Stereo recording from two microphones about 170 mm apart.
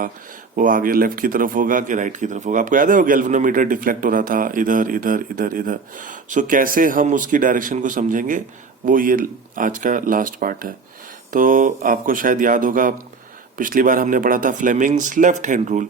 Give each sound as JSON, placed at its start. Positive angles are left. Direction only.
{"t": 0.5, "sound": "speech", "side_deg": -55}